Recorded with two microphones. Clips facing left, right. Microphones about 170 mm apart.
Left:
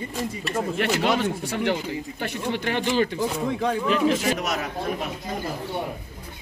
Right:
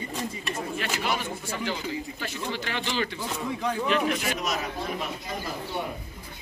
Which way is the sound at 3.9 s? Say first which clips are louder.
Left 6 dB; 35° left (ahead or behind).